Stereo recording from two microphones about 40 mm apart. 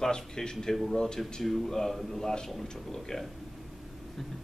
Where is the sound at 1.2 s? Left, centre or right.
Centre.